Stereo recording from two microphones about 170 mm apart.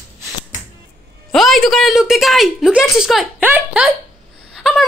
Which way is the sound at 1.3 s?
Centre (ahead or behind).